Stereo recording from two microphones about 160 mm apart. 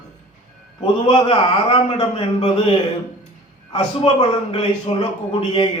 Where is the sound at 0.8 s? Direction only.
35° left (ahead or behind).